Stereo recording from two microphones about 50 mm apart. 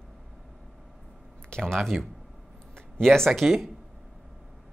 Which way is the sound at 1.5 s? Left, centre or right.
Centre.